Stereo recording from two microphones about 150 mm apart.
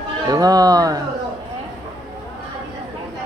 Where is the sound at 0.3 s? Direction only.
25° right (ahead or behind).